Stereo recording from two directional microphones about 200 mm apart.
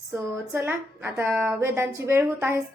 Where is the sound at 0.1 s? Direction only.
10° right (ahead or behind).